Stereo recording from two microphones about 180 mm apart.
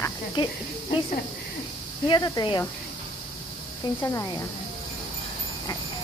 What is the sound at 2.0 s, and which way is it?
Speech, 25° left (ahead or behind).